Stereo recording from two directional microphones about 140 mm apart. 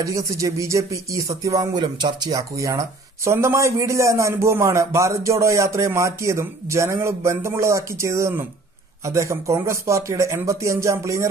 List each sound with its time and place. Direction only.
0.0 s speech: 20° right (ahead or behind)